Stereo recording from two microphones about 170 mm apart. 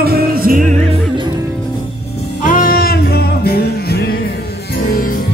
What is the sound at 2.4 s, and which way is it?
Music, 55° left (ahead or behind).